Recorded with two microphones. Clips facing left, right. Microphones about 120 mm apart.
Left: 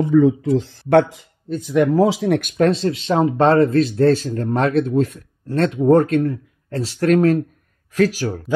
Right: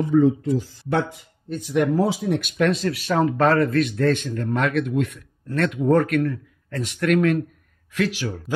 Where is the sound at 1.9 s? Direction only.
90° left.